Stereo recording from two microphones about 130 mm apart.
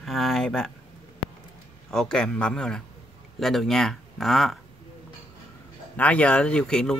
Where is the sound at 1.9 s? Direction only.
5° left (ahead or behind).